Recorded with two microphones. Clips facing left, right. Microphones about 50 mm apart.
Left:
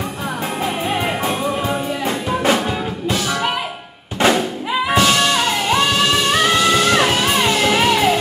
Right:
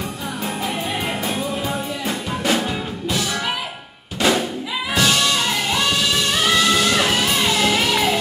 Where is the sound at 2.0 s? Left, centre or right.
Left.